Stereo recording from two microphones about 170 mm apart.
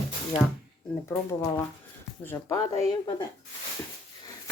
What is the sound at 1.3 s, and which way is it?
Speech, 15° left (ahead or behind).